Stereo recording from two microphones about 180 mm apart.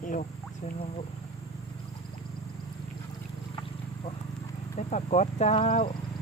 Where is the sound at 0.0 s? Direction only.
45° left (ahead or behind).